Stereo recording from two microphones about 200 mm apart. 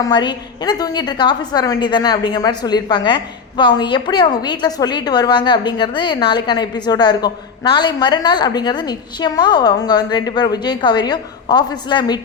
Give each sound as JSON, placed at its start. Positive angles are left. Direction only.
{"t": 0.0, "sound": "a woman's voice", "side_deg": 20}